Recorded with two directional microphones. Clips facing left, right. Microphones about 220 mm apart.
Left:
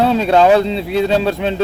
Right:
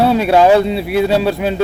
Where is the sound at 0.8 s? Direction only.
20° left (ahead or behind).